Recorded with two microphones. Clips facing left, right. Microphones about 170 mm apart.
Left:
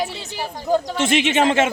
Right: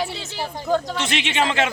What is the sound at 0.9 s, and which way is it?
Speech, 50° left (ahead or behind).